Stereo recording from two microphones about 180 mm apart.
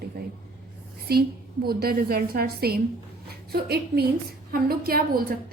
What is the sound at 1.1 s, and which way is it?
A woman's voice, 60° right (ahead or behind).